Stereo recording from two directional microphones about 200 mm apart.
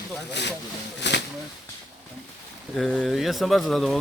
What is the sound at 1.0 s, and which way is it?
Speech, 60° left (ahead or behind).